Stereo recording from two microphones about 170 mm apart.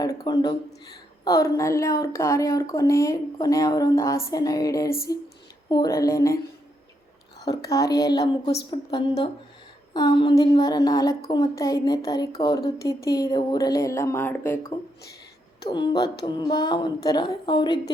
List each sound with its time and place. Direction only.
0.0 s a woman's voice: 25° left (ahead or behind)
7.4 s a woman's voice: 20° left (ahead or behind)
15.6 s a woman's voice: 25° left (ahead or behind)